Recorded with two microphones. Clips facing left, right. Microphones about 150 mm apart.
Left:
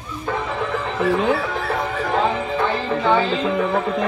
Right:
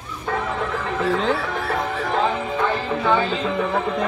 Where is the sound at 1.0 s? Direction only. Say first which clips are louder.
Left 3 dB; 10° left (ahead or behind).